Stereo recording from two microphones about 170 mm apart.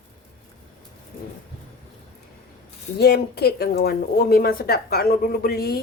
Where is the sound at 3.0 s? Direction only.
70° left (ahead or behind).